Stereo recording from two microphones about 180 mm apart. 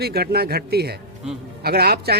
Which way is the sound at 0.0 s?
60° right (ahead or behind).